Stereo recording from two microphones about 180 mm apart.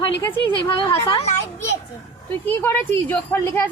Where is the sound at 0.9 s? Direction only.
20° left (ahead or behind).